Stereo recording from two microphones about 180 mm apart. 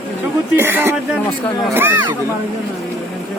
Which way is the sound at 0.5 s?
10° right (ahead or behind).